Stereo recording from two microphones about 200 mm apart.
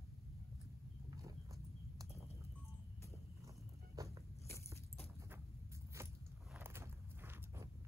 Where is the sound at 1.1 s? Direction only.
15° right (ahead or behind).